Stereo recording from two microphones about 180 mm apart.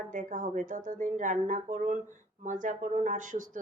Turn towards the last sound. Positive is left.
turn(degrees=-45)  # may be behind; listen again after turning